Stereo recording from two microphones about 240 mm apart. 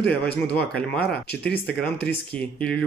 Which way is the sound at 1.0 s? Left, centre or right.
Left.